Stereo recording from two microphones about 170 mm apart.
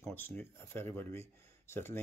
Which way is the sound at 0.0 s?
10° left (ahead or behind).